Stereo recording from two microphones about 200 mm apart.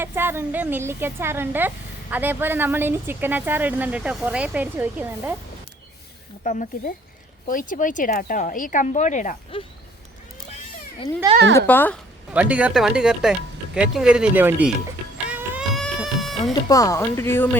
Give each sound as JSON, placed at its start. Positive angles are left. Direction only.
{"t": 0.0, "sound": "speech", "side_deg": -10}
{"t": 6.4, "sound": "speech", "side_deg": 40}
{"t": 11.5, "sound": "speech", "side_deg": 10}
{"t": 12.3, "sound": "speech", "side_deg": -5}
{"t": 15.3, "sound": "baby cry", "side_deg": -5}
{"t": 16.6, "sound": "speech", "side_deg": 15}